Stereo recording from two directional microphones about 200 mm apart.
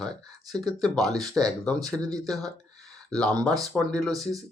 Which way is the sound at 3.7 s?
Centre (ahead or behind).